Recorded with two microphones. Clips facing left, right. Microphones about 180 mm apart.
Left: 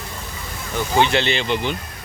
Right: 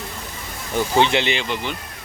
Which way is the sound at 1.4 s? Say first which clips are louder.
Left 4 dB; centre (ahead or behind).